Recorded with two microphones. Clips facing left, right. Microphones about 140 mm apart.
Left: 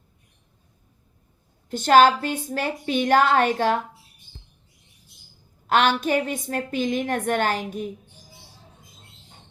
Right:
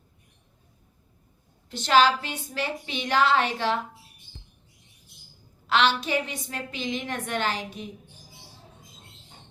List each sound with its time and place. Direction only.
1.7 s a woman's voice: 50° left (ahead or behind)
5.6 s a woman's voice: 50° left (ahead or behind)